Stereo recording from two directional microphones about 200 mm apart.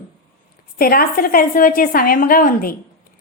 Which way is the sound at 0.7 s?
45° left (ahead or behind).